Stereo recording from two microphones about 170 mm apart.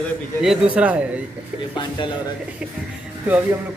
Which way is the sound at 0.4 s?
5° right (ahead or behind).